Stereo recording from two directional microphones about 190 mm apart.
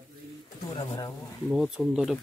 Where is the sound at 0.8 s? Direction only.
20° left (ahead or behind).